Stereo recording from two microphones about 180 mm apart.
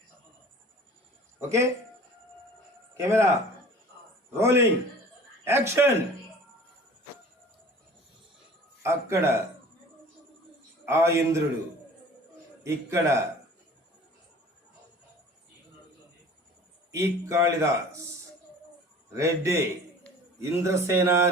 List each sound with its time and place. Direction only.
1.4 s speech: 15° right (ahead or behind)
2.9 s speech: 15° right (ahead or behind)
4.3 s speech: 15° right (ahead or behind)
8.8 s speech: 15° right (ahead or behind)
10.8 s speech: 15° right (ahead or behind)
12.6 s speech: 15° right (ahead or behind)
16.9 s speech: 15° right (ahead or behind)
19.1 s speech: 15° right (ahead or behind)